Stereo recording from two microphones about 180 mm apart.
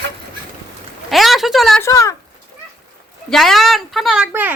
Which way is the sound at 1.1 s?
Centre (ahead or behind).